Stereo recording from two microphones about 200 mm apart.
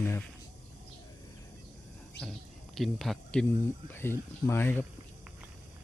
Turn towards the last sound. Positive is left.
turn(degrees=10)  # may be behind; listen again after turning